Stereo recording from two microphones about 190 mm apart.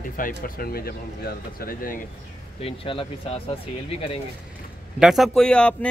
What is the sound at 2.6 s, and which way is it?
Speech, 30° left (ahead or behind).